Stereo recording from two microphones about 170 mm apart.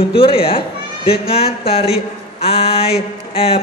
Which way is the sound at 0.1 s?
30° left (ahead or behind).